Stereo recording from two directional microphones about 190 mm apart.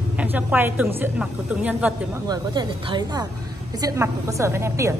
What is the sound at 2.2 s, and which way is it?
A woman's voice, 20° right (ahead or behind).